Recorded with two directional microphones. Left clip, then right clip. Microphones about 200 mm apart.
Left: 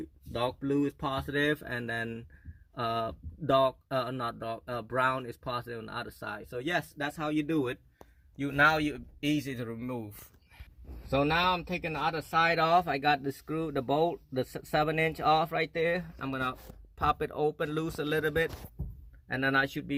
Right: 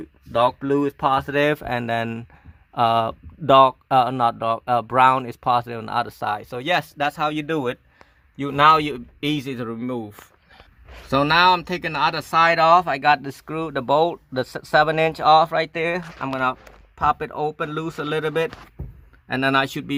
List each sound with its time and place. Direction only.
0.3 s speech: 25° right (ahead or behind)
11.1 s speech: 25° right (ahead or behind)
12.5 s speech: 5° right (ahead or behind); by 20.0 s 30° right (ahead or behind)